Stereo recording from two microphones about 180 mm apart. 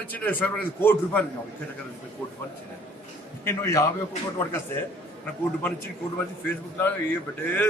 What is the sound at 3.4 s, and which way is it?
Speech, 15° left (ahead or behind).